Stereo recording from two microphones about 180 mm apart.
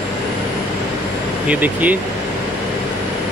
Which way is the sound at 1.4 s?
10° right (ahead or behind).